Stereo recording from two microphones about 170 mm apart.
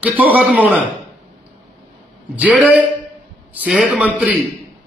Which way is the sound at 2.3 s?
10° right (ahead or behind).